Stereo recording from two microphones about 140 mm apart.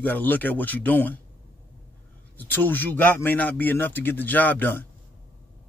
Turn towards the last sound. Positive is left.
turn(degrees=15)  # may be behind; listen again after turning